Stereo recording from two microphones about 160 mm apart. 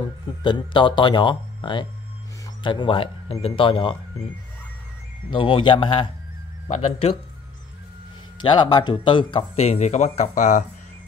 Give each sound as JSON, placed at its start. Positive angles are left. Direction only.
{"t": 0.4, "sound": "speech", "side_deg": 30}
{"t": 5.3, "sound": "speech", "side_deg": 30}
{"t": 8.4, "sound": "speech", "side_deg": 30}